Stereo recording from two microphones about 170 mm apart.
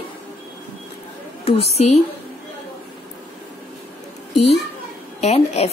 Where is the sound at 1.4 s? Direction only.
35° left (ahead or behind).